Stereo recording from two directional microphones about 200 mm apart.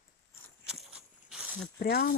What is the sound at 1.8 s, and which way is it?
Speech, 50° left (ahead or behind).